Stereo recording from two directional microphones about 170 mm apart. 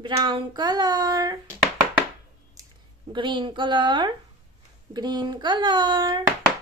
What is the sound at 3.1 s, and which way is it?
Speech, 30° right (ahead or behind).